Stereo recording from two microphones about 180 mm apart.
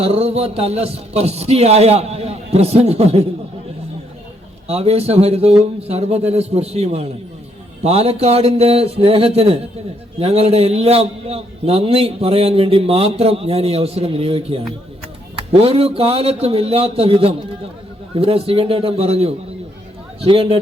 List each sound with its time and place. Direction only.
0.0 s a man's voice: 35° right (ahead or behind)
4.7 s a man's voice: 35° right (ahead or behind)